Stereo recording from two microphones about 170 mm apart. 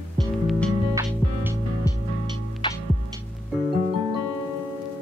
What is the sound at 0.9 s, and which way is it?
Music, 15° right (ahead or behind).